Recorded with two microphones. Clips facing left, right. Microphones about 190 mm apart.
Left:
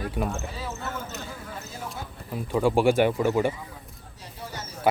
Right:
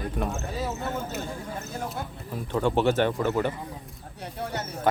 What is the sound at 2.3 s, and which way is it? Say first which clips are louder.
Speech: left 2 dB; 10° left (ahead or behind).